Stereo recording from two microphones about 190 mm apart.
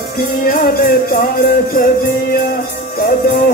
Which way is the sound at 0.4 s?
50° left (ahead or behind).